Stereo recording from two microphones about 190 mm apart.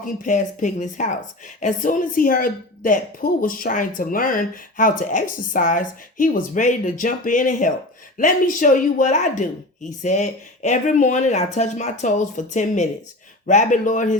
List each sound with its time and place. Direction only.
0.0 s a woman's voice: 40° left (ahead or behind)